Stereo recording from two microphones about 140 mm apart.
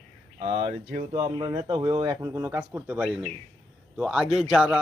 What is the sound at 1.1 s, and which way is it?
Speech, 30° right (ahead or behind).